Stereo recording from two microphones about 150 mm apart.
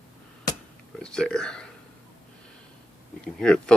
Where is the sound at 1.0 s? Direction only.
5° left (ahead or behind).